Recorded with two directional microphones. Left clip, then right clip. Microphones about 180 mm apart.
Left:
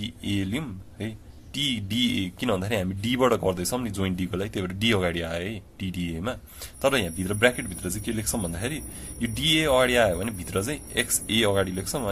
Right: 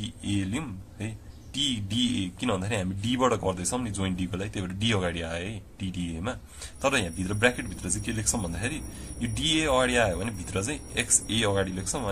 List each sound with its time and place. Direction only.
0.0 s speech: 30° left (ahead or behind)